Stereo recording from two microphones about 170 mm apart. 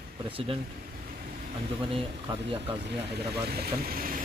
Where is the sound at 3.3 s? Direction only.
70° right (ahead or behind).